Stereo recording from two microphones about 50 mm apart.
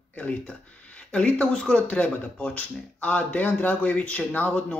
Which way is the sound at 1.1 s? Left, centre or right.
Left.